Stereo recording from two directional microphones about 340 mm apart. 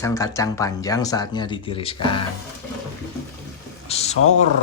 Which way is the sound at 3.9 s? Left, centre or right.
Centre.